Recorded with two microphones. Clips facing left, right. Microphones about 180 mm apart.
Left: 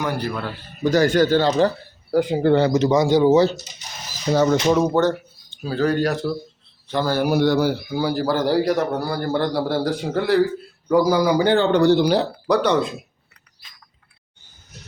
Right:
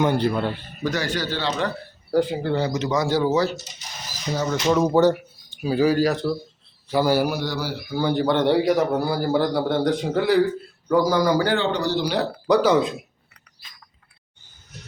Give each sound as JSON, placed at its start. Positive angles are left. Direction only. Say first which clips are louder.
{"t": 0.0, "sound": "a man's voice", "louder": "right 4 dB", "side_deg": -25}
{"t": 0.9, "sound": "speech", "louder": "left 9 dB", "side_deg": 45}
{"t": 2.4, "sound": "speech", "louder": "left 7 dB", "side_deg": 60}
{"t": 2.9, "sound": "speech", "louder": "left 5 dB", "side_deg": 20}
{"t": 4.3, "sound": "speech", "louder": "left 8 dB", "side_deg": 65}
{"t": 4.8, "sound": "a man's voice", "louder": "right 1 dB", "side_deg": -10}
{"t": 7.3, "sound": "speech", "louder": "left 10 dB", "side_deg": 55}
{"t": 7.9, "sound": "speech", "louder": "left 1 dB", "side_deg": 10}
{"t": 8.1, "sound": "a man's voice", "louder": "right 1 dB", "side_deg": 0}
{"t": 11.5, "sound": "speech", "louder": "left 7 dB", "side_deg": 50}
{"t": 12.5, "sound": "a man's voice", "louder": "right 2 dB", "side_deg": 0}